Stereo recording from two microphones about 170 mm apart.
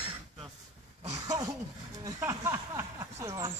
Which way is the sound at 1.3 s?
20° right (ahead or behind).